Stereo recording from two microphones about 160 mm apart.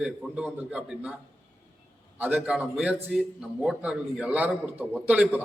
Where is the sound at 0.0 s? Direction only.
5° right (ahead or behind).